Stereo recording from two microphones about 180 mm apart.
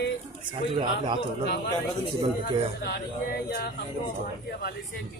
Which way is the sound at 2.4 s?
60° left (ahead or behind).